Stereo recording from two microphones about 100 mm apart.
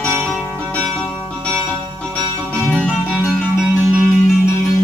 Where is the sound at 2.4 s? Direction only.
15° left (ahead or behind).